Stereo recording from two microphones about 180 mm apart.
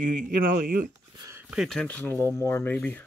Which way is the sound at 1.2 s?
15° right (ahead or behind).